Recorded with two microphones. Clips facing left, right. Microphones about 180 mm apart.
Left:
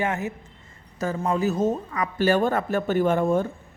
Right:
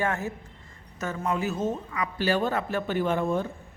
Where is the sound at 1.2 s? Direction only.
35° left (ahead or behind).